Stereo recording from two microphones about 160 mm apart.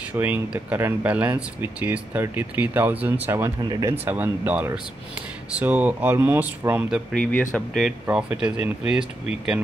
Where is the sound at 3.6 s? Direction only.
25° right (ahead or behind).